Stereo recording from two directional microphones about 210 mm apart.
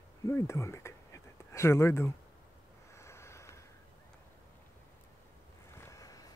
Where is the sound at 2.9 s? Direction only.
15° left (ahead or behind).